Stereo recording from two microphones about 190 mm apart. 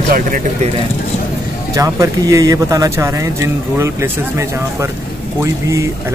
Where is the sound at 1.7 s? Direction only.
15° right (ahead or behind).